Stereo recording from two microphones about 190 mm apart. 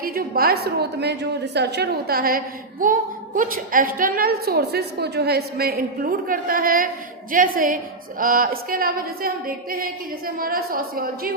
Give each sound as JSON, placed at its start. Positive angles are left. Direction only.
{"t": 0.0, "sound": "a woman's voice", "side_deg": -50}